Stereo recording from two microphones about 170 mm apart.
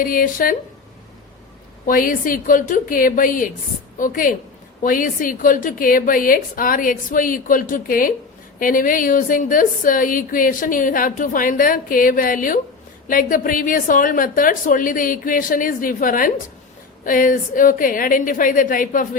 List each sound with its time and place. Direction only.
0.0 s a woman's voice: 55° left (ahead or behind)
1.9 s a woman's voice: 55° left (ahead or behind)